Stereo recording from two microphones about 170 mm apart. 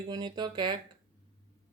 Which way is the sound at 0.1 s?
25° right (ahead or behind).